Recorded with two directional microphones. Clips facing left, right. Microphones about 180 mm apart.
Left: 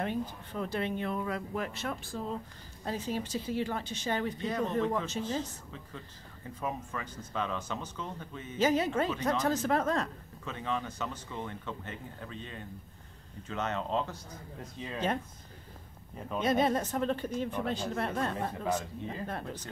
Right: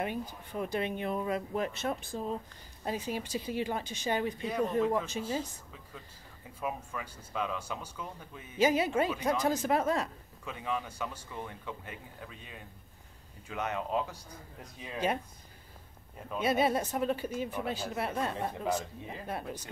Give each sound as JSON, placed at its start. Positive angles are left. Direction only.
{"t": 0.0, "sound": "speech", "side_deg": -15}
{"t": 16.3, "sound": "speech", "side_deg": -10}